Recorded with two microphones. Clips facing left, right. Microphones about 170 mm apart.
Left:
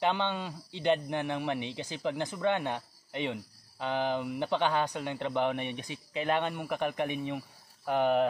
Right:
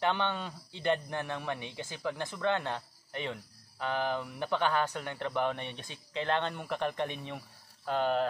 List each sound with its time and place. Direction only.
0.0 s a man's voice: 15° left (ahead or behind)